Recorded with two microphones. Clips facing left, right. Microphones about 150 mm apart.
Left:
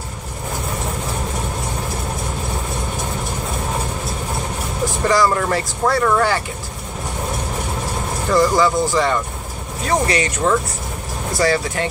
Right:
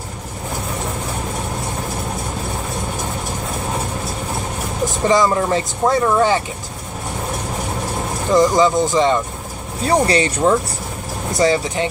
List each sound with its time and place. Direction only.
5.0 s speech: 20° right (ahead or behind)
8.3 s speech: 20° right (ahead or behind)
9.8 s speech: 30° right (ahead or behind)